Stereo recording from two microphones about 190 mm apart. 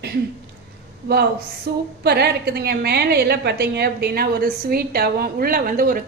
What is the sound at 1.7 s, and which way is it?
A woman's voice, 55° right (ahead or behind).